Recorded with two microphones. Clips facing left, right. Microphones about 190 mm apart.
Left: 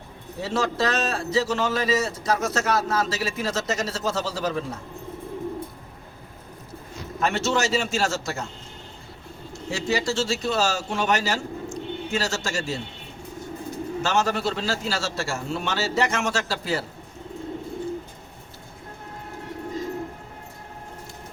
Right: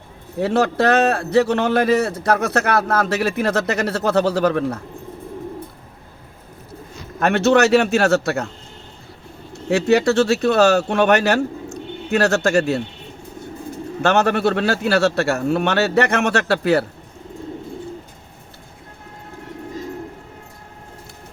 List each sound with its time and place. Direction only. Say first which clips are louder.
0.3 s a man's voice: right 7 dB; 60° right (ahead or behind)
7.2 s a man's voice: right 9 dB; 60° right (ahead or behind)
9.5 s speech: right 10 dB; 65° right (ahead or behind)
14.0 s a man's voice: right 8 dB; 60° right (ahead or behind)